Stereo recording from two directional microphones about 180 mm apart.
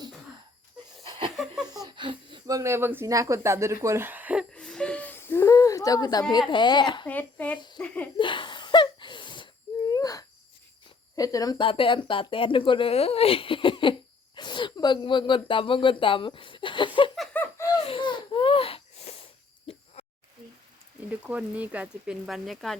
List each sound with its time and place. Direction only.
1.0 s a sound: 25° right (ahead or behind)
1.7 s speech: 25° right (ahead or behind)
4.5 s whimper: 5° left (ahead or behind); by 6.2 s 20° left (ahead or behind)
6.5 s speech: 25° left (ahead or behind)
7.1 s a child's voice: 10° left (ahead or behind)
7.8 s a sound: 5° left (ahead or behind)
8.2 s gasp: 25° left (ahead or behind)
9.9 s hoot: 20° left (ahead or behind)
11.2 s speech: 20° left (ahead or behind)
14.3 s a sound: 25° left (ahead or behind)
17.2 s snicker: 10° left (ahead or behind)
17.8 s a sound: 30° left (ahead or behind)
21.0 s speech: 10° right (ahead or behind)